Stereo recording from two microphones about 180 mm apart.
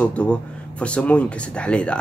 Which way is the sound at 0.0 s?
5° left (ahead or behind).